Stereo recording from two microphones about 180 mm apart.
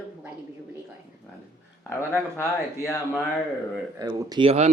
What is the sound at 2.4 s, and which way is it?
Speech, 15° left (ahead or behind).